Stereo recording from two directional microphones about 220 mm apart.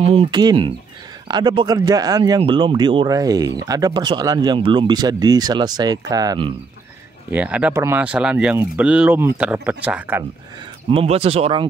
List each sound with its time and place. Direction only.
0.0 s speech: 25° right (ahead or behind)
7.2 s speech: 5° right (ahead or behind)
10.9 s speech: 25° right (ahead or behind)